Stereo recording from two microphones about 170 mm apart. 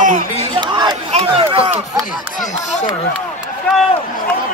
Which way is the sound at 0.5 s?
25° right (ahead or behind).